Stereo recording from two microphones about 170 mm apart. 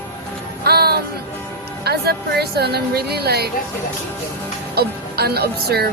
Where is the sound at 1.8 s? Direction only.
70° right (ahead or behind).